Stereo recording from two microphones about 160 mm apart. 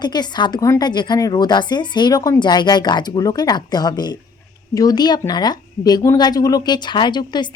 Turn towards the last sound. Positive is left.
turn(degrees=25)  # may be behind; listen again after turning